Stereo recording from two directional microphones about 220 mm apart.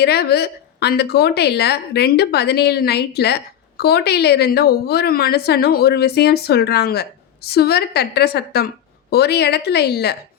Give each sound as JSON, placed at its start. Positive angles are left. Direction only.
{"t": 0.0, "sound": "a woman's voice", "side_deg": 45}